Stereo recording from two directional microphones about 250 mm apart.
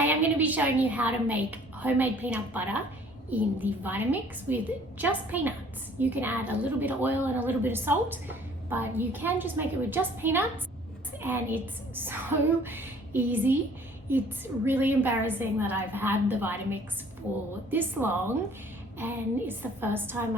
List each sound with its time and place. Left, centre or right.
0.0 s a woman's voice: centre